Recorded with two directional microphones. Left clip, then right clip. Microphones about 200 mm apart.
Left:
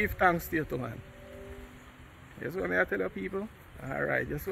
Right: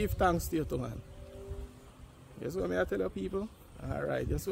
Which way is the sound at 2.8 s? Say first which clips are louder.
Left 2 dB; 20° right (ahead or behind).